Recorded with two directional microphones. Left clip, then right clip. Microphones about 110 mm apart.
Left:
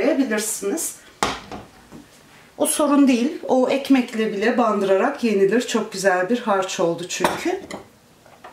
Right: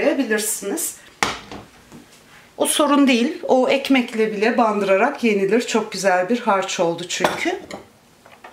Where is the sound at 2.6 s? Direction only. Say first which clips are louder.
Right 1 dB; 20° right (ahead or behind).